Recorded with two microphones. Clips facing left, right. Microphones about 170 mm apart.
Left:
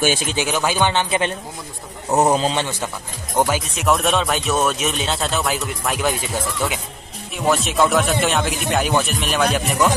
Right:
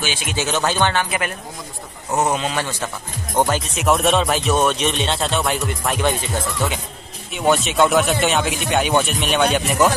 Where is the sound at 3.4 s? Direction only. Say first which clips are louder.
Even; centre (ahead or behind).